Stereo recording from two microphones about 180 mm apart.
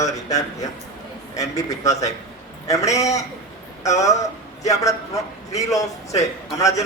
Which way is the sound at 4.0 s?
20° left (ahead or behind).